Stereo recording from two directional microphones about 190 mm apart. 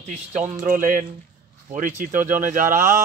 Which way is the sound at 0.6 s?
45° right (ahead or behind).